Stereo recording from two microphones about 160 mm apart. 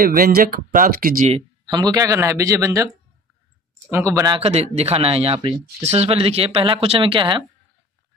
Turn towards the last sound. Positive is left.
turn(degrees=-30)  # may be behind; listen again after turning